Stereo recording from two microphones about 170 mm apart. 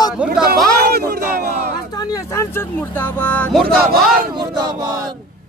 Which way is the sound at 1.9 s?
20° left (ahead or behind).